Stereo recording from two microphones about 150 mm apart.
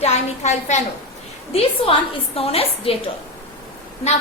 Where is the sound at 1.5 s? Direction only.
40° left (ahead or behind).